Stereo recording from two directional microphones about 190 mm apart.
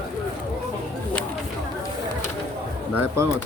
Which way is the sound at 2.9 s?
15° right (ahead or behind).